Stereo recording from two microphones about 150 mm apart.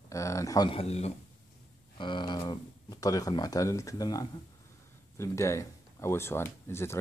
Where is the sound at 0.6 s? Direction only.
40° left (ahead or behind).